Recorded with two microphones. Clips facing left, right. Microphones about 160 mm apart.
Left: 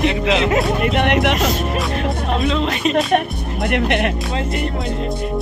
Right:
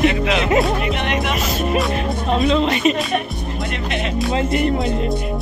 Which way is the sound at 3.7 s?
65° left (ahead or behind).